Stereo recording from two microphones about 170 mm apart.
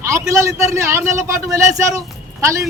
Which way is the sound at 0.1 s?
20° right (ahead or behind).